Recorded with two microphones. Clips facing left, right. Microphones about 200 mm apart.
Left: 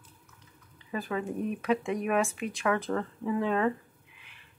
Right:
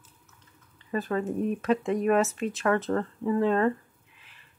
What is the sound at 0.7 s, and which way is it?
Speech, centre (ahead or behind).